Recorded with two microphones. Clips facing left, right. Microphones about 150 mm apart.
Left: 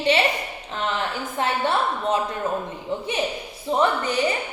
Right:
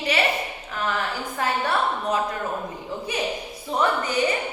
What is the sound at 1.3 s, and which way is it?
Speech, 25° left (ahead or behind).